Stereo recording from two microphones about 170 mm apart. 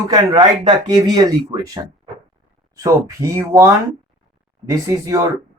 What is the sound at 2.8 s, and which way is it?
Speech, 20° right (ahead or behind).